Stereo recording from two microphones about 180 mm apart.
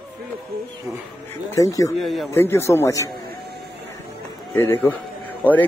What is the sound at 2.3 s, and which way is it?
Speech, 15° left (ahead or behind).